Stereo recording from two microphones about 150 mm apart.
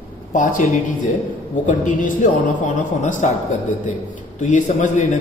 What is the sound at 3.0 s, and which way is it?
Speech, 55° left (ahead or behind).